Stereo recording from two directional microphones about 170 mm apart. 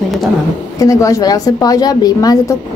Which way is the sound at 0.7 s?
20° left (ahead or behind).